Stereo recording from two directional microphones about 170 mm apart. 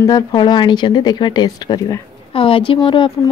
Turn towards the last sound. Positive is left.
turn(degrees=30)  # may be behind; listen again after turning